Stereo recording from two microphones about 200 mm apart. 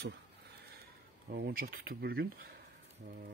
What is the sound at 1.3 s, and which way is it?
Speech, 50° right (ahead or behind).